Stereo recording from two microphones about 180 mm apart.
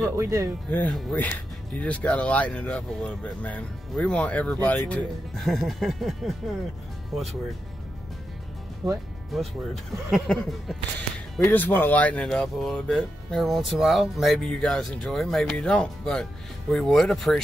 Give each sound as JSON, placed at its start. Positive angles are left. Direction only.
{"t": 0.0, "sound": "speech", "side_deg": -15}
{"t": 0.7, "sound": "speech", "side_deg": 10}
{"t": 9.3, "sound": "speech", "side_deg": 0}